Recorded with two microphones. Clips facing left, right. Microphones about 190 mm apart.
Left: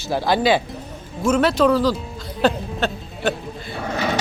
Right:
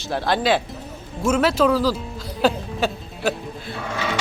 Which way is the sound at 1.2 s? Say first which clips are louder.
Left 1 dB; 5° right (ahead or behind).